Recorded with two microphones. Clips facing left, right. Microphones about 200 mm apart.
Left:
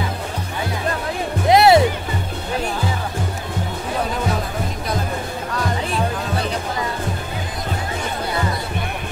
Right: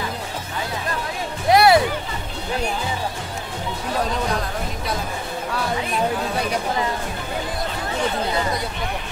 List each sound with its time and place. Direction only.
1.5 s music: 25° left (ahead or behind)